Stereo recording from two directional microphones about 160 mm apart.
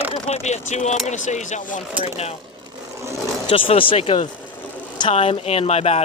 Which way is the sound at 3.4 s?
35° left (ahead or behind).